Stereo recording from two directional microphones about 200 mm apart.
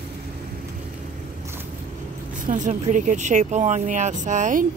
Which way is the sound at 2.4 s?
40° right (ahead or behind).